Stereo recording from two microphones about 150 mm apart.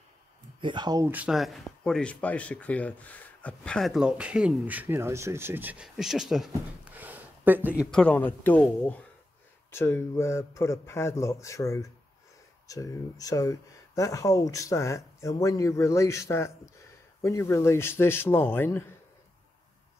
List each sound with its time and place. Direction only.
0.6 s speech: 30° right (ahead or behind)
1.0 s speech: 10° right (ahead or behind)
7.9 s speech: 5° left (ahead or behind)
9.7 s speech: 15° left (ahead or behind)